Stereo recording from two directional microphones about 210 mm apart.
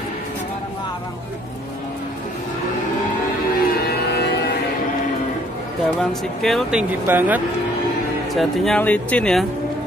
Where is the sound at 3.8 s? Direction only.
50° left (ahead or behind).